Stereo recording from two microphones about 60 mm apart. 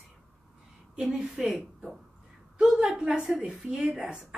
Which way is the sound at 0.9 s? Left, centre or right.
Centre.